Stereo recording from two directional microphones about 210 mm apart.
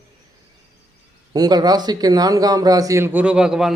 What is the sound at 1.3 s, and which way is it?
A man's voice, 20° right (ahead or behind).